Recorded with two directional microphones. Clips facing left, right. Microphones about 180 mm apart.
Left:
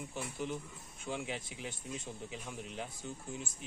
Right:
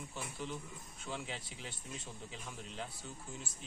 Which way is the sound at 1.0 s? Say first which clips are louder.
Left 4 dB; 15° left (ahead or behind).